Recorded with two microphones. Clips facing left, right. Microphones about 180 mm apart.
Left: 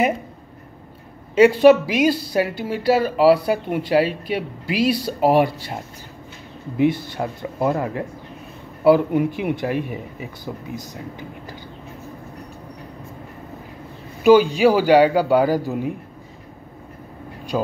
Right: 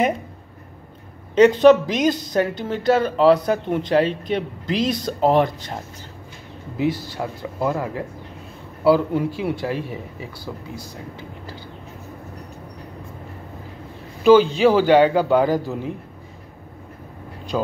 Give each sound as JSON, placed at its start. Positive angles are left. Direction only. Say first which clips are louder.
{"t": 1.3, "sound": "speech", "louder": "even", "side_deg": 10}
{"t": 7.2, "sound": "speech", "louder": "left 2 dB", "side_deg": 20}
{"t": 14.2, "sound": "speech", "louder": "even", "side_deg": 10}